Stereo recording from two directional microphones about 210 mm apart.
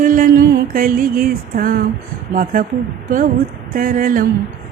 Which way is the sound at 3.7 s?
40° right (ahead or behind).